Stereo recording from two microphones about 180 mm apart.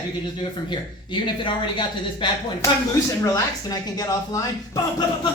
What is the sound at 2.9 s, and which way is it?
Speech, 15° left (ahead or behind).